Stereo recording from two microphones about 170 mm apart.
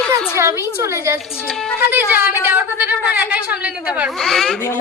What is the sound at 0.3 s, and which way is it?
Speech, 15° right (ahead or behind).